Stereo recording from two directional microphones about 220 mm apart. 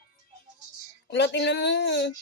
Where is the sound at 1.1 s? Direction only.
50° left (ahead or behind).